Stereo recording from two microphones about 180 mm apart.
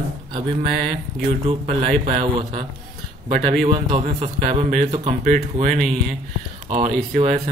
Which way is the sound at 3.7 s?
30° right (ahead or behind).